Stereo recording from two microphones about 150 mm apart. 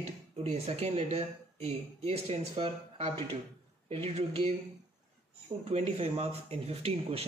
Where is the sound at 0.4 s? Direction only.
45° right (ahead or behind).